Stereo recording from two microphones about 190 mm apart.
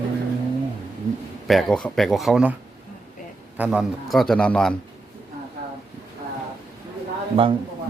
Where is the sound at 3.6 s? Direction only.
5° right (ahead or behind).